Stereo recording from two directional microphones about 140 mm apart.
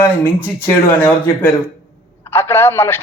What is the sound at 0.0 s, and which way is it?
A man's voice, 15° left (ahead or behind).